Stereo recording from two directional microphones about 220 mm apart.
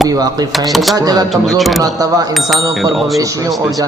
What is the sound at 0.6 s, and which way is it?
Speech, centre (ahead or behind).